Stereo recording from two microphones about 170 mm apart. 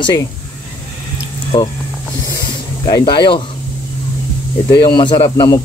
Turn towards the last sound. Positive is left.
turn(degrees=25)  # may be behind; listen again after turning